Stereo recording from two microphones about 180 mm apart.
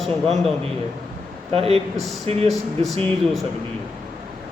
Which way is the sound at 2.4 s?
Centre (ahead or behind).